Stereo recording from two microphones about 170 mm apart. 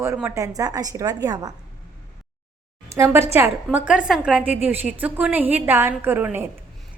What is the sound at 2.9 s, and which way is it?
A woman's voice, 15° right (ahead or behind).